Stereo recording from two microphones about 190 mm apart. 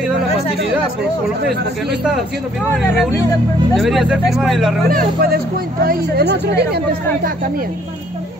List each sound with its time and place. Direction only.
3.7 s speech: centre (ahead or behind)
4.8 s speech: 50° right (ahead or behind)